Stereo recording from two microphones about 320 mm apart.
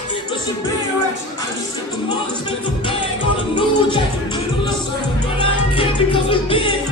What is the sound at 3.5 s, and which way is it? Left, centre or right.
Music, centre.